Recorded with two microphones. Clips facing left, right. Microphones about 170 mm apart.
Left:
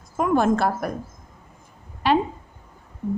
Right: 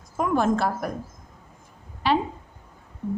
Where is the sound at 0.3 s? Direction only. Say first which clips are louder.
Left 2 dB; 60° left (ahead or behind).